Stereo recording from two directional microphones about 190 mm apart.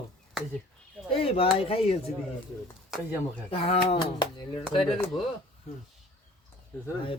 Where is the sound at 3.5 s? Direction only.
30° left (ahead or behind).